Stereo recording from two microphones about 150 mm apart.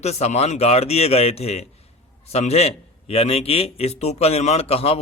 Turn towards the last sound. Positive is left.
turn(degrees=40)  # may be behind; listen again after turning